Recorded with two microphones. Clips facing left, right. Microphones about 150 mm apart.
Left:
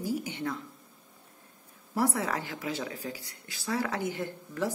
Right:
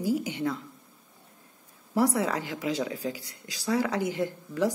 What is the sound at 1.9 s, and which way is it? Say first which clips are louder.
Speech: right 4 dB; 15° right (ahead or behind).